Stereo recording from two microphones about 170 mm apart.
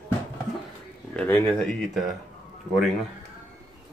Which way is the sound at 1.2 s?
10° left (ahead or behind).